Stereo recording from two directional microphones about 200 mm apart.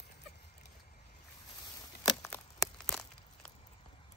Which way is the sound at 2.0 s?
10° left (ahead or behind).